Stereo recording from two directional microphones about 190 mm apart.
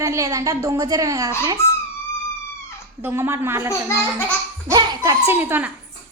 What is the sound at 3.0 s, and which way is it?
A woman's voice, 10° right (ahead or behind).